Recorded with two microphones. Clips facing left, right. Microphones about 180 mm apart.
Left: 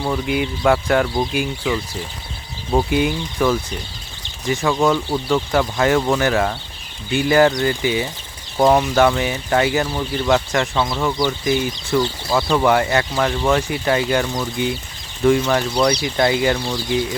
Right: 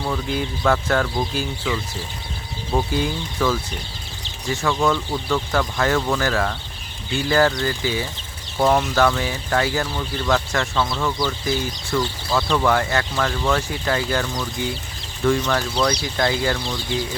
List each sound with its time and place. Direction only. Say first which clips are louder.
0.0 s speech: left 4 dB; 15° left (ahead or behind)
2.9 s speech: left 4 dB; 15° left (ahead or behind)